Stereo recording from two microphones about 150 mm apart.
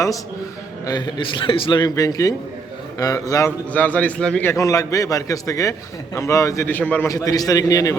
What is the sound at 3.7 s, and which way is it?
Speech, 10° left (ahead or behind).